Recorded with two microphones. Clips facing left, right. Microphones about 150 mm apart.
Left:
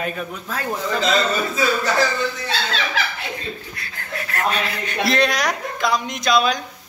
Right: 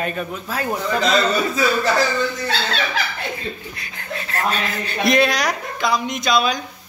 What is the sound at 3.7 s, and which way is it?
Chuckle, 20° right (ahead or behind).